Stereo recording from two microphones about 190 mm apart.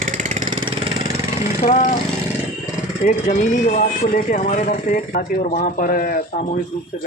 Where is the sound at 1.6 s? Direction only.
40° left (ahead or behind).